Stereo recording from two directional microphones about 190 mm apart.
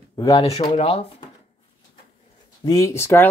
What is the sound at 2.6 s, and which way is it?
Speech, 15° left (ahead or behind).